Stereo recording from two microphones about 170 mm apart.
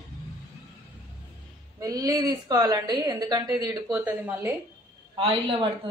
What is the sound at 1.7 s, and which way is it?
A woman's voice, 20° right (ahead or behind).